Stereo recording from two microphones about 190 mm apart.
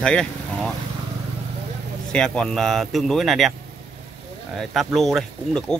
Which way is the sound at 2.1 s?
5° left (ahead or behind).